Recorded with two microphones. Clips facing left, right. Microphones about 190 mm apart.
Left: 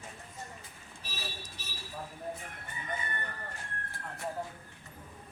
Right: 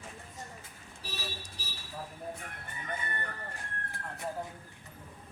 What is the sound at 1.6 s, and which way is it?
Vehicle, 35° right (ahead or behind).